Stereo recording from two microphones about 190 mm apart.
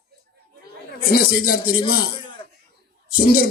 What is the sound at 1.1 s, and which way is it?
Speech, 50° left (ahead or behind).